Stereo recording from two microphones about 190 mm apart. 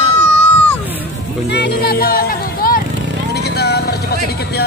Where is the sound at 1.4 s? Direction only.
60° left (ahead or behind).